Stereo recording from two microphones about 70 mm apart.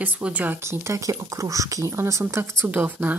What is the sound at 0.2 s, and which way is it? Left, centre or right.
Speech, right.